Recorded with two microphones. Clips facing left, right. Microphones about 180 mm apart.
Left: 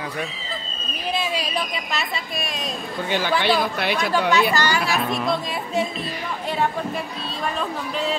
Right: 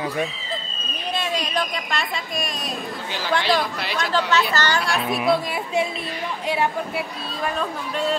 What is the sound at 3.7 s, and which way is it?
Speech, 60° left (ahead or behind).